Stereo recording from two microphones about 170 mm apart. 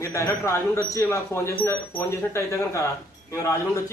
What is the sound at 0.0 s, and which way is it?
A man's voice, 15° left (ahead or behind).